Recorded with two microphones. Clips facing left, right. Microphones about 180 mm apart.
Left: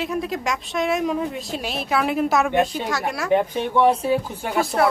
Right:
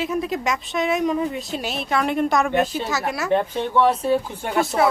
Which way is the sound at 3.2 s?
15° left (ahead or behind).